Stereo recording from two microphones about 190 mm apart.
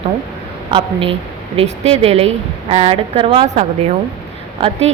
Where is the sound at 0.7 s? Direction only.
30° right (ahead or behind).